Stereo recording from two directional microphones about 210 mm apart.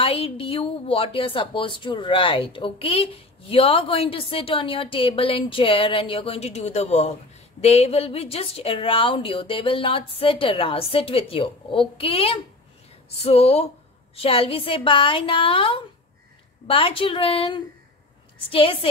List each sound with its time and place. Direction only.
0.0 s a woman's voice: 25° left (ahead or behind)